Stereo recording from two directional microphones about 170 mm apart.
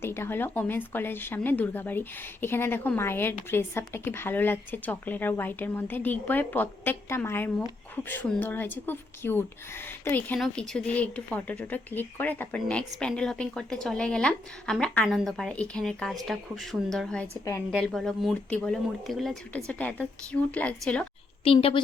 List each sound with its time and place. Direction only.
0.0 s speech: 15° left (ahead or behind)
21.4 s a woman's voice: 35° left (ahead or behind)